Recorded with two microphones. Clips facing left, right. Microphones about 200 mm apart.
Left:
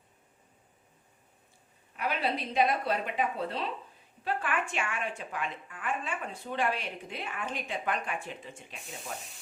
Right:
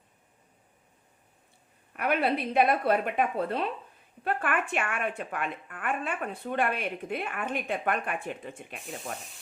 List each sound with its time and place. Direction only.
2.0 s speech: 55° right (ahead or behind)